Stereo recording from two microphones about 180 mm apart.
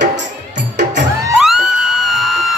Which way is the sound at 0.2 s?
75° right (ahead or behind).